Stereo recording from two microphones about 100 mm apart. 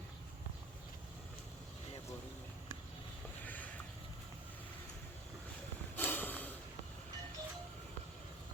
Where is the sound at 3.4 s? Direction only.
15° left (ahead or behind).